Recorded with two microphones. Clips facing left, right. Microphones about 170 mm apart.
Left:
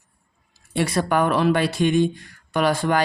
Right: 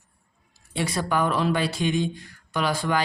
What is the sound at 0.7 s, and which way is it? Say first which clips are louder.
Speech: left 4 dB; 60° left (ahead or behind).